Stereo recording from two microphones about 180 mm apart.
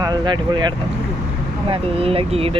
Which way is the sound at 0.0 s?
25° right (ahead or behind).